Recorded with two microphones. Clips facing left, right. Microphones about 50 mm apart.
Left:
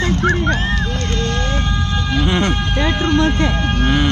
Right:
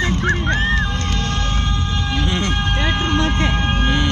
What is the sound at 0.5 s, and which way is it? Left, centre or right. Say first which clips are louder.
Goose: even; right.